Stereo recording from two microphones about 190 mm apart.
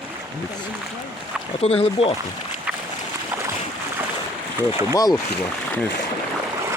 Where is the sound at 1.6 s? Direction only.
30° left (ahead or behind).